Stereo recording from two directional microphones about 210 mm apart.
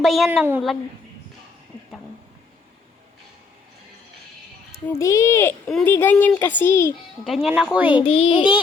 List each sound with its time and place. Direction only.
0.0 s a woman's voice: centre (ahead or behind)
4.9 s speech: 15° left (ahead or behind)
7.3 s a woman's voice: 5° right (ahead or behind)
7.9 s a child's voice: 25° left (ahead or behind)